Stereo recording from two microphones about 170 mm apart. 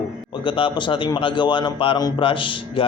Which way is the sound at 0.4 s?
30° left (ahead or behind).